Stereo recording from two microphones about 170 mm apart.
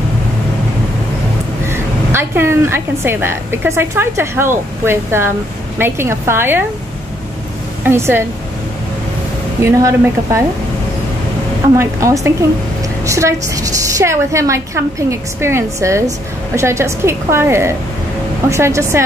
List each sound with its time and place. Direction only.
1.7 s a woman's voice: 15° right (ahead or behind)
7.8 s a woman's voice: 15° right (ahead or behind)
9.6 s a woman's voice: 15° right (ahead or behind)
11.8 s a woman's voice: 20° right (ahead or behind)